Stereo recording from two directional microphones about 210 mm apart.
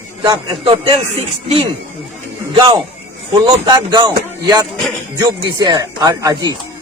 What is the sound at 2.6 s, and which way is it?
A man's voice, 25° right (ahead or behind).